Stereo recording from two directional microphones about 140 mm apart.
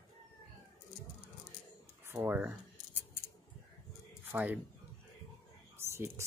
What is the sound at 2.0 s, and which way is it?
Speech, 15° right (ahead or behind).